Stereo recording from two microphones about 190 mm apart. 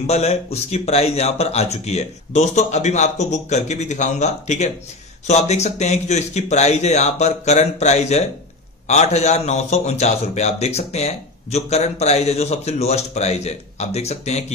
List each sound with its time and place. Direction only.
0.0 s a man's voice: 35° left (ahead or behind)